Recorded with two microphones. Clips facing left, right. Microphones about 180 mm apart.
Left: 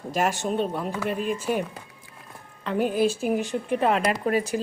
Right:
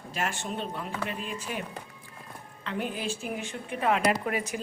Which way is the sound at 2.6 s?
45° left (ahead or behind).